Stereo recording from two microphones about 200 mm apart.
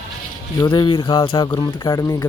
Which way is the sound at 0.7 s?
25° left (ahead or behind).